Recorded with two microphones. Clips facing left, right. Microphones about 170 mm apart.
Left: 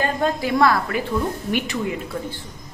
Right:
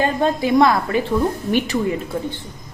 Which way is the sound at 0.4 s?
20° right (ahead or behind).